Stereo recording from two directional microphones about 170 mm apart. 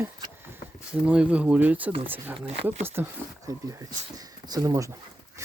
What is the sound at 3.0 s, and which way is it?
Speech, 15° right (ahead or behind).